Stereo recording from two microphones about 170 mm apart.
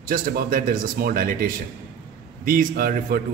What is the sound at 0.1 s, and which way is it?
Speech, 55° right (ahead or behind).